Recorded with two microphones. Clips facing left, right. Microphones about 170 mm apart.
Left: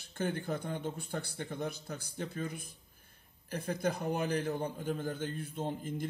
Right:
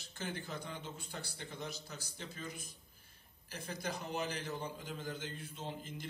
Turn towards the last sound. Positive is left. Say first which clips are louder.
# left 8 dB
turn(degrees=50)  # may be behind; listen again after turning